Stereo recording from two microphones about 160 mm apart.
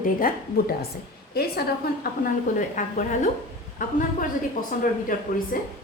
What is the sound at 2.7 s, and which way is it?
A woman's voice, 55° left (ahead or behind).